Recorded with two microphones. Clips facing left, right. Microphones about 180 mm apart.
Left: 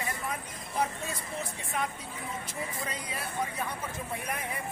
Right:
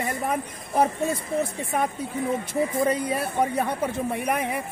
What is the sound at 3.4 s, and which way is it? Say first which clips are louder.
Speech: right 10 dB; 65° right (ahead or behind).